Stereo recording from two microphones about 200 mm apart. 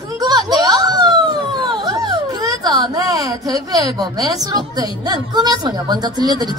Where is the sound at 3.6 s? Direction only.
20° right (ahead or behind).